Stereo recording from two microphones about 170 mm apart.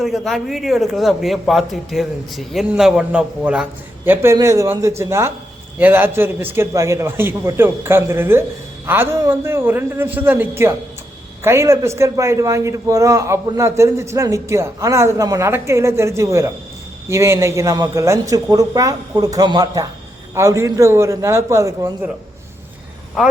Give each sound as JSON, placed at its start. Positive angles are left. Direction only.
{"t": 0.0, "sound": "a man's voice", "side_deg": 0}